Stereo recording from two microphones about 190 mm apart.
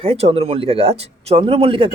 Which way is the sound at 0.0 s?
30° right (ahead or behind).